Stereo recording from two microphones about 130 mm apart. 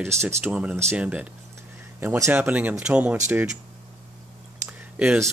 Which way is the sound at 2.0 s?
20° right (ahead or behind).